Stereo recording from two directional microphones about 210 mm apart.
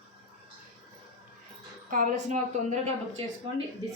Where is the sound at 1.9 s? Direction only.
35° right (ahead or behind).